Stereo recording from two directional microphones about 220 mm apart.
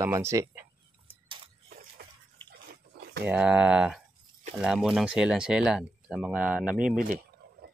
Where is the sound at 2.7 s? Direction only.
50° right (ahead or behind).